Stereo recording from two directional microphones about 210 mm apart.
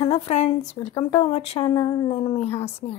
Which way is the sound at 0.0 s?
30° left (ahead or behind).